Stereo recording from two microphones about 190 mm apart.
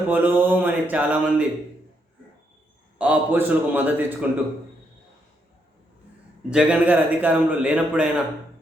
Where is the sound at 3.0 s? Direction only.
10° right (ahead or behind).